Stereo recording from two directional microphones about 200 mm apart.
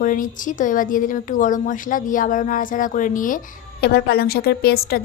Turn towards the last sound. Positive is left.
turn(degrees=50)  # may be behind; listen again after turning